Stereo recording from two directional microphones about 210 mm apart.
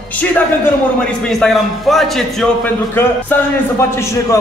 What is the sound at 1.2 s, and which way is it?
A man's voice, centre (ahead or behind).